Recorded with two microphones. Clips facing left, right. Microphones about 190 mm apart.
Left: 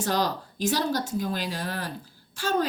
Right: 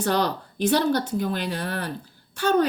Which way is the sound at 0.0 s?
60° right (ahead or behind).